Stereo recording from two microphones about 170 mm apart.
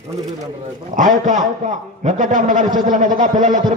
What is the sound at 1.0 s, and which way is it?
A man's voice, 50° right (ahead or behind).